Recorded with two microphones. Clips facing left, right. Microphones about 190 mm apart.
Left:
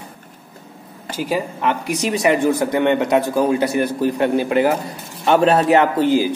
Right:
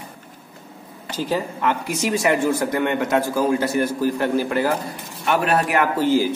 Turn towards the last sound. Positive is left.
turn(degrees=15)  # may be behind; listen again after turning